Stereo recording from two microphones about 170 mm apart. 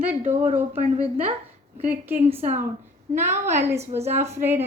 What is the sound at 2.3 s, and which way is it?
Speech, 45° right (ahead or behind).